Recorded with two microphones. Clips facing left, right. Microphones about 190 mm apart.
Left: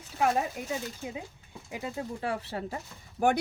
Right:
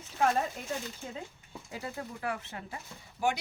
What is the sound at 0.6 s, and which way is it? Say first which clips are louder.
A woman's voice: left 3 dB; 10° left (ahead or behind).